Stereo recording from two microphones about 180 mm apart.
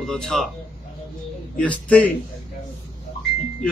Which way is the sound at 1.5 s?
5° left (ahead or behind).